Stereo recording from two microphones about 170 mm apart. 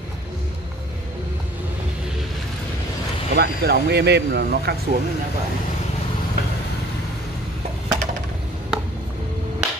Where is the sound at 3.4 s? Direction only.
70° right (ahead or behind).